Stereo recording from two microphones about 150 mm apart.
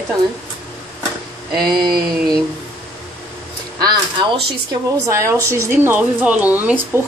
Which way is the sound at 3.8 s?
30° right (ahead or behind).